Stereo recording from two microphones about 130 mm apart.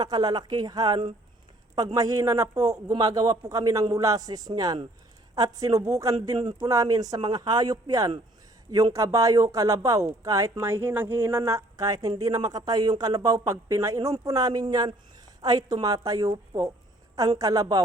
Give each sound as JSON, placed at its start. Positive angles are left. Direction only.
{"t": 0.0, "sound": "speech", "side_deg": -30}